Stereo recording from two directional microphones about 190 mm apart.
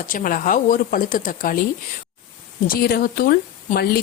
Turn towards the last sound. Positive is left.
turn(degrees=55)  # may be behind; listen again after turning